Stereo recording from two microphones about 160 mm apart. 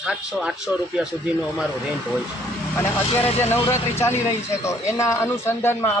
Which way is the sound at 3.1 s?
35° left (ahead or behind).